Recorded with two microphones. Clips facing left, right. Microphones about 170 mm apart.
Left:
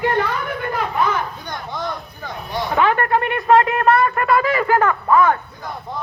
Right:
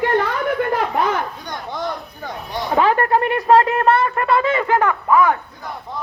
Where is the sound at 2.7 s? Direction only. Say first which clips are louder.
Right 2 dB; 35° right (ahead or behind); by 5.4 s 15° right (ahead or behind).